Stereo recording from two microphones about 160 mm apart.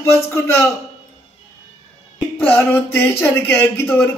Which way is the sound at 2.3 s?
10° left (ahead or behind).